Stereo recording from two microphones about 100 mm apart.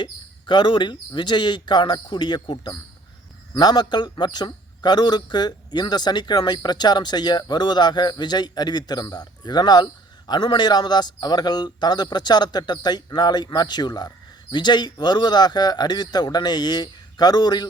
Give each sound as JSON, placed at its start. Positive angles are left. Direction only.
{"t": 0.0, "sound": "a man's voice", "side_deg": 50}